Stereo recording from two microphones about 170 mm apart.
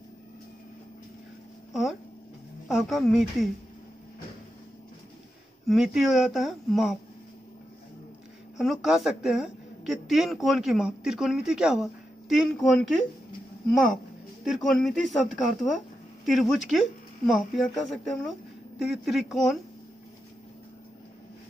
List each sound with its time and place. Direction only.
1.7 s a woman's voice: centre (ahead or behind)
5.7 s a woman's voice: centre (ahead or behind)
8.5 s a woman's voice: centre (ahead or behind)